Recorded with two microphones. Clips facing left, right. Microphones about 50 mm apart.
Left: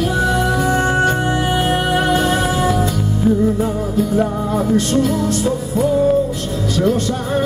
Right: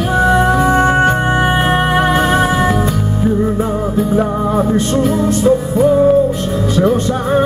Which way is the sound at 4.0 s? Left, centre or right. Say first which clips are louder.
Right 2 dB; right.